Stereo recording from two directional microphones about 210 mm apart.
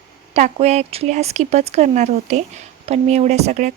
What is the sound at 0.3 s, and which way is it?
Speech, 30° right (ahead or behind).